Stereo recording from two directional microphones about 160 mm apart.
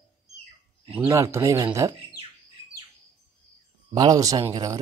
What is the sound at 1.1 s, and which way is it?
Speech, 20° right (ahead or behind).